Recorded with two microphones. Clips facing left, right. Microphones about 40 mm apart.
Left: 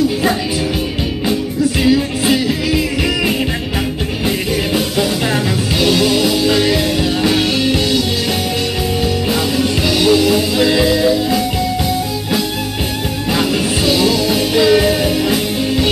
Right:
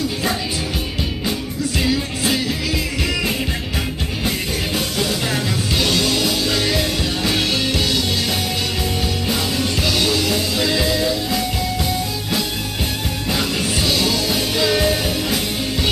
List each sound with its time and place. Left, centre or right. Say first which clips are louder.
1.8 s music: left 6 dB; centre
4.7 s music: left 4 dB; centre
9.3 s music: left 4 dB; centre
13.3 s music: left 5 dB; centre